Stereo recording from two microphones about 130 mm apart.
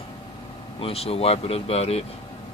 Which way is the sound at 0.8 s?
50° left (ahead or behind).